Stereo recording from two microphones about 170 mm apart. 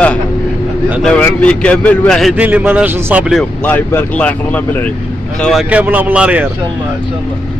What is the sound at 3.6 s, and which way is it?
A man's voice, 10° left (ahead or behind).